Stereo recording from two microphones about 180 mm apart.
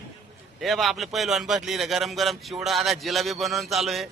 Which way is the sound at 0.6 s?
Centre (ahead or behind).